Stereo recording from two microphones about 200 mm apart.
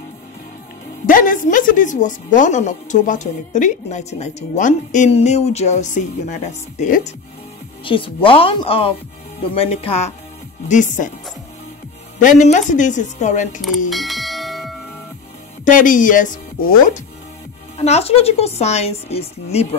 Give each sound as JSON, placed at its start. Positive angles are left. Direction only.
{"t": 1.0, "sound": "speech", "side_deg": 40}
{"t": 7.8, "sound": "a woman's voice", "side_deg": 25}
{"t": 12.2, "sound": "speech", "side_deg": 40}
{"t": 13.8, "sound": "bell", "side_deg": 0}
{"t": 15.6, "sound": "speech", "side_deg": 40}
{"t": 17.7, "sound": "speech", "side_deg": 30}